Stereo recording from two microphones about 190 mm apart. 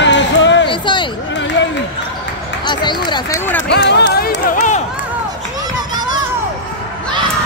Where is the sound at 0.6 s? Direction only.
25° left (ahead or behind).